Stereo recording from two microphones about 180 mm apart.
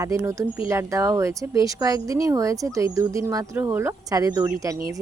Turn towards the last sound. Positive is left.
turn(degrees=-20)  # may be behind; listen again after turning